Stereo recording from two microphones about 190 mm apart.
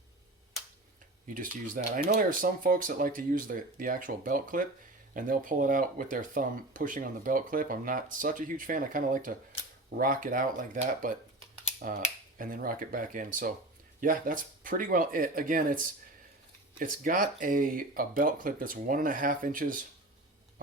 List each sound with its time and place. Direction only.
1.3 s speech: 45° right (ahead or behind)